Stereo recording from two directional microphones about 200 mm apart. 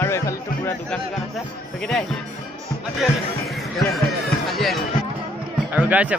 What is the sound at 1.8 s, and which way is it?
Speech, centre (ahead or behind).